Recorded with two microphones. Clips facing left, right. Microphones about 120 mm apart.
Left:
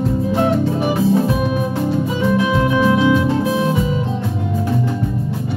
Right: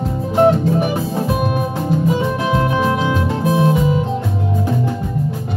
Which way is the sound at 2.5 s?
35° right (ahead or behind).